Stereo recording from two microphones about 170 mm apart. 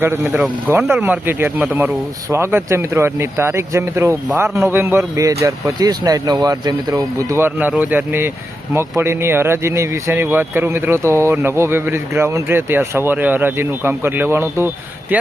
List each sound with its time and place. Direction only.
0.0 s speech: 15° right (ahead or behind)